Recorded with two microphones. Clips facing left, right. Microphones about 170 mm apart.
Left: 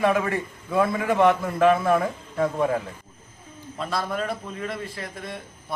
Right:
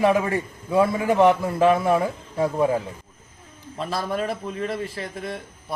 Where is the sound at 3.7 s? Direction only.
25° right (ahead or behind).